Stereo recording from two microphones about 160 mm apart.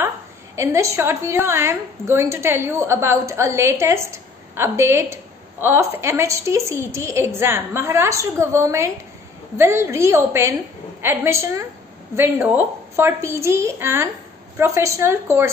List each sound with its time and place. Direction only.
0.6 s a woman's voice: 20° right (ahead or behind)